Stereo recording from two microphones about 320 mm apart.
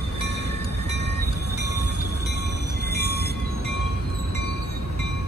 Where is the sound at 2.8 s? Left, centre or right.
Right.